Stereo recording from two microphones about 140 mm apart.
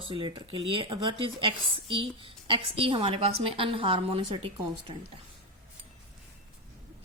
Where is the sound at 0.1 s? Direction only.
35° right (ahead or behind).